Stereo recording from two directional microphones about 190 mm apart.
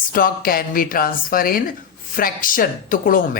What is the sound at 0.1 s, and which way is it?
A man's voice, 50° left (ahead or behind).